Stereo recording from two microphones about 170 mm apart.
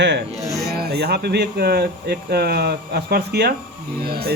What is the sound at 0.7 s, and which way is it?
Speech, 70° right (ahead or behind).